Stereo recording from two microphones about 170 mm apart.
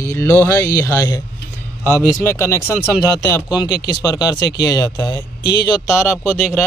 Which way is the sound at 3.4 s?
5° right (ahead or behind).